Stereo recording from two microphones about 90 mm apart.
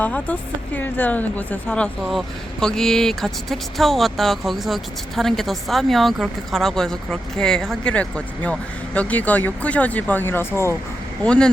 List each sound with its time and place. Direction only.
0.0 s speech: 15° left (ahead or behind)
2.0 s speech: 5° left (ahead or behind); by 10.8 s 30° left (ahead or behind)
11.2 s speech: 10° left (ahead or behind)